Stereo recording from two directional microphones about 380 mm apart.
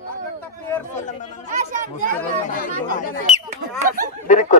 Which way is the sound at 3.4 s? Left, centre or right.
Centre.